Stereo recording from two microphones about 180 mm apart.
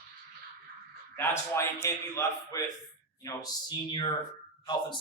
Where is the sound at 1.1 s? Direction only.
15° left (ahead or behind).